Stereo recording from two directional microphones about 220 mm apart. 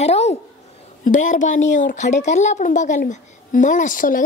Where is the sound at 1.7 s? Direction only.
35° left (ahead or behind).